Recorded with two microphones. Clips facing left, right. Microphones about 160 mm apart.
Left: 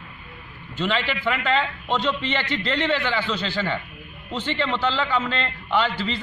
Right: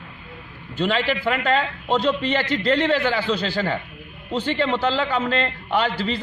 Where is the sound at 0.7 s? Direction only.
40° right (ahead or behind).